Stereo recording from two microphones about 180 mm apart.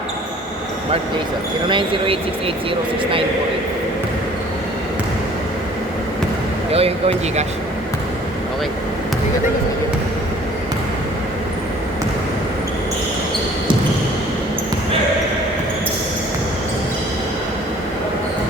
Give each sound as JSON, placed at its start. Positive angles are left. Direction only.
{"t": 1.7, "sound": "speech", "side_deg": -30}
{"t": 6.7, "sound": "speech", "side_deg": -35}